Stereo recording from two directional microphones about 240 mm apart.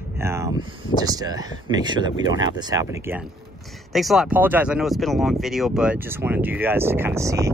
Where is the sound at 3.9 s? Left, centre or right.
Centre.